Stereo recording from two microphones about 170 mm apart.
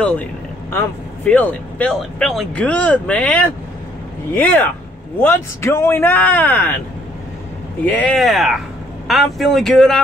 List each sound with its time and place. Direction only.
0.0 s speech: 10° left (ahead or behind)
7.8 s speech: 10° left (ahead or behind)